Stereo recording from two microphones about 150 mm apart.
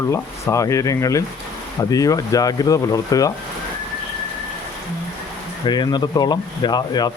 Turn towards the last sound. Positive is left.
turn(degrees=30)  # may be behind; listen again after turning